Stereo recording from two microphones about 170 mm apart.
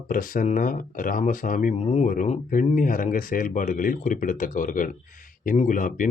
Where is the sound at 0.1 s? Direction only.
55° left (ahead or behind).